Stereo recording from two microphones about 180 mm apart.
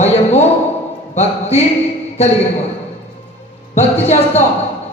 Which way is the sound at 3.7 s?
35° left (ahead or behind).